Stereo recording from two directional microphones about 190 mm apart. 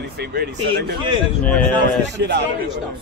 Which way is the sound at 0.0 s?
60° right (ahead or behind).